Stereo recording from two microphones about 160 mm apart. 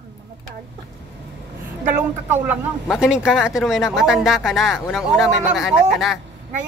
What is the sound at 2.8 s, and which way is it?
A woman's voice, 5° right (ahead or behind).